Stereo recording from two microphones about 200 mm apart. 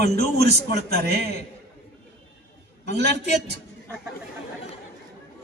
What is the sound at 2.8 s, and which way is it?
Speech, 55° right (ahead or behind).